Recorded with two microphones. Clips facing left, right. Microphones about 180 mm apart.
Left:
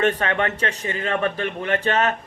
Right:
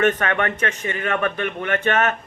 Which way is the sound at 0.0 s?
30° left (ahead or behind).